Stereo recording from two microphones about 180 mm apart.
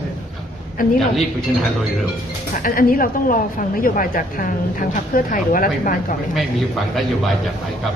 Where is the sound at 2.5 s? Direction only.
50° left (ahead or behind).